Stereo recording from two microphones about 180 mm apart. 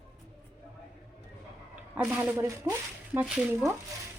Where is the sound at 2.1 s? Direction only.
15° right (ahead or behind).